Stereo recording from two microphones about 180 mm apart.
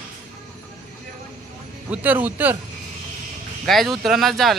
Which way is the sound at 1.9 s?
10° right (ahead or behind).